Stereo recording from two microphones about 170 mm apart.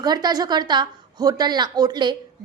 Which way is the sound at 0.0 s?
25° right (ahead or behind).